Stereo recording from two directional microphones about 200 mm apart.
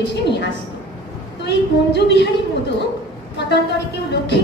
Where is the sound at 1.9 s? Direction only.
60° left (ahead or behind).